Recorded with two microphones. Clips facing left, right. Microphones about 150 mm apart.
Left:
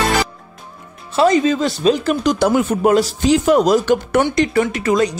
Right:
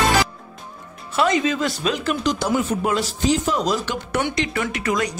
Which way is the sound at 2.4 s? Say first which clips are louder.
Left 7 dB; 55° left (ahead or behind).